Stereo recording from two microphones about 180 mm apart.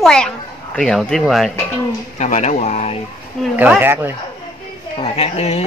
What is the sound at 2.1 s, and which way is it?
Speech, 40° left (ahead or behind).